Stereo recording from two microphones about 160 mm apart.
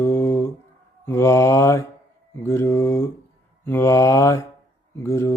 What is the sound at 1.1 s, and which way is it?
Mantra, 15° left (ahead or behind).